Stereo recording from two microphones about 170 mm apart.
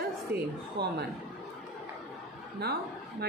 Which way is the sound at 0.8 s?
75° right (ahead or behind).